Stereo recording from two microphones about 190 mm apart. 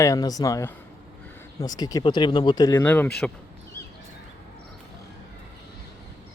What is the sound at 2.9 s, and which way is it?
Speech, 10° left (ahead or behind).